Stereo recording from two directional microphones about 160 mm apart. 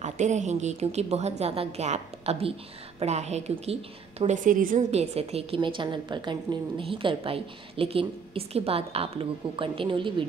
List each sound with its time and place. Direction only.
0.0 s a woman's voice: 50° right (ahead or behind)
4.9 s a woman's voice: 40° right (ahead or behind)